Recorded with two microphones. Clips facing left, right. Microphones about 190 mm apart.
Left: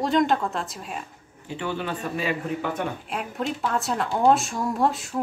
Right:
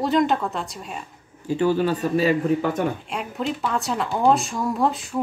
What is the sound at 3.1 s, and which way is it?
Speech, centre (ahead or behind).